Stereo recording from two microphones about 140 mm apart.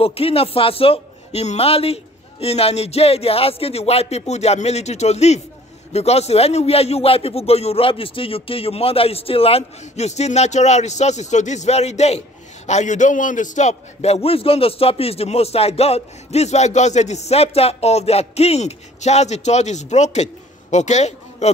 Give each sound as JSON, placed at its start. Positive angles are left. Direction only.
{"t": 0.0, "sound": "a man's voice", "side_deg": 45}